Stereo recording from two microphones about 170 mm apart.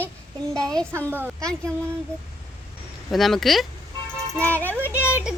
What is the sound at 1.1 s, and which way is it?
Speech, 10° right (ahead or behind).